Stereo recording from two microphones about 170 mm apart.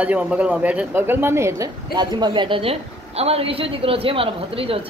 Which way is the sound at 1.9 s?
25° right (ahead or behind).